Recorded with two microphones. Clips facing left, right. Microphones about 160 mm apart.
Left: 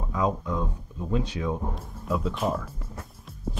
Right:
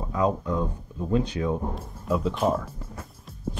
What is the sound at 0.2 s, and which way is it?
Speech, centre (ahead or behind).